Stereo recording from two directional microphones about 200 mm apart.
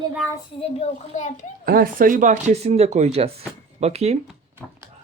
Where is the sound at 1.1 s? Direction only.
35° left (ahead or behind).